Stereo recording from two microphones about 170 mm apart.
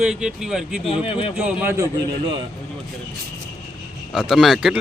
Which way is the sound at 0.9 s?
35° left (ahead or behind).